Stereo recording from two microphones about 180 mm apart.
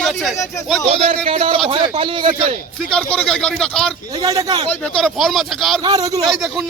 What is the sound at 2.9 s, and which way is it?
A man's voice, 5° left (ahead or behind).